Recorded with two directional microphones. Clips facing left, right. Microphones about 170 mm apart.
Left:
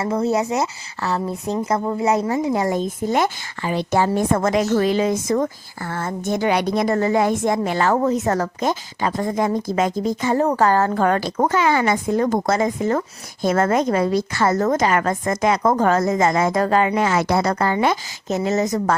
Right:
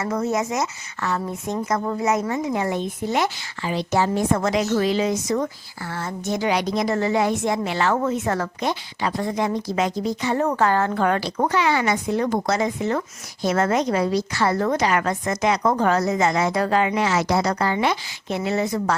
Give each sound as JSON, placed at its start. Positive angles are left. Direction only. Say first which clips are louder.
{"t": 0.0, "sound": "a woman's voice", "louder": "left 3 dB", "side_deg": 30}
{"t": 1.8, "sound": "speech", "louder": "left 2 dB", "side_deg": 20}
{"t": 2.0, "sound": "a woman's voice", "louder": "left 4 dB", "side_deg": 30}